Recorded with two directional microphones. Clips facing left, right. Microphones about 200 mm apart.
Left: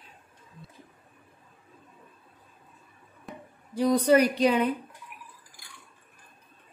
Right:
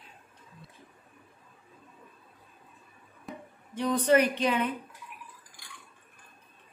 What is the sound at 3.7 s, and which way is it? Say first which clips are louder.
A woman's voice: left 3 dB; 35° left (ahead or behind).